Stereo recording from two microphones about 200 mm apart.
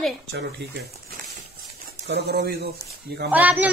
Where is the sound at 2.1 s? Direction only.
55° right (ahead or behind).